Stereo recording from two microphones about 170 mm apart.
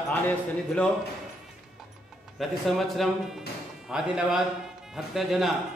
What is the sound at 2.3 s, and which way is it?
Speech, centre (ahead or behind).